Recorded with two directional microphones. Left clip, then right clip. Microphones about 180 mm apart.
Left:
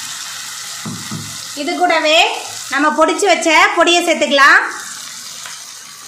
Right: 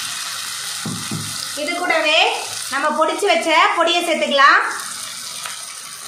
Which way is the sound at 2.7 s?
45° left (ahead or behind).